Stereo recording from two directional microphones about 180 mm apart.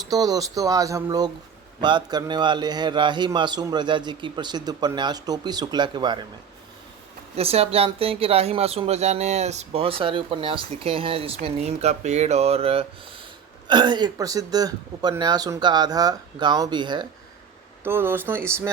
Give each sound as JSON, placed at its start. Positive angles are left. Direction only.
{"t": 0.1, "sound": "a man's voice", "side_deg": -20}
{"t": 7.3, "sound": "a man's voice", "side_deg": -35}
{"t": 17.8, "sound": "speech", "side_deg": -10}